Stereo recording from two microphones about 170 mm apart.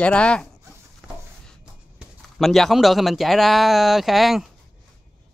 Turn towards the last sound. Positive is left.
turn(degrees=0)  # may be behind; listen again after turning